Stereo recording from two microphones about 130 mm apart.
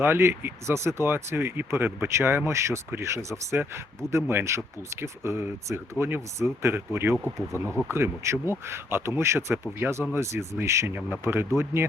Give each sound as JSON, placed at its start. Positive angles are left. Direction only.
{"t": 0.0, "sound": "speech", "side_deg": -20}